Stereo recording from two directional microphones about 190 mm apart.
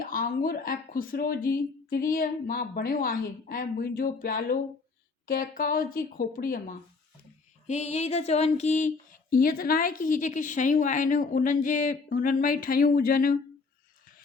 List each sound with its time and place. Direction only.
0.0 s speech: 50° left (ahead or behind)
7.7 s music: 35° left (ahead or behind)
9.3 s speech: 50° left (ahead or behind)